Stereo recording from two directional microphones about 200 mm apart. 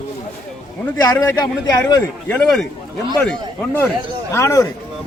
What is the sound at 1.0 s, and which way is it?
Speech, 15° left (ahead or behind).